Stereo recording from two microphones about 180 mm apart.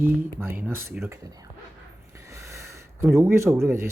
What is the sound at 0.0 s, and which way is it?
Speech, 10° right (ahead or behind).